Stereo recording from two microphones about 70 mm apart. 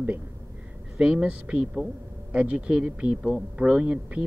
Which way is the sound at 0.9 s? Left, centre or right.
Centre.